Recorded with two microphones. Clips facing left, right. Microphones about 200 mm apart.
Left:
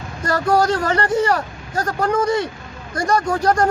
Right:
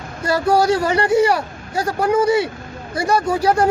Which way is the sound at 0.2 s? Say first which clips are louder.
Right 1 dB; 10° right (ahead or behind).